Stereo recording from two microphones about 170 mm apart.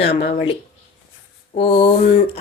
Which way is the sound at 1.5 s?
30° left (ahead or behind).